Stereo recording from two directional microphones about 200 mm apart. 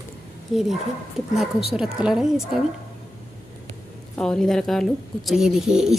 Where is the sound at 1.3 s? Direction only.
Centre (ahead or behind).